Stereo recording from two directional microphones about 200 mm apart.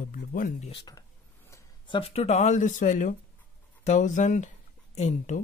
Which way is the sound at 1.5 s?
25° left (ahead or behind).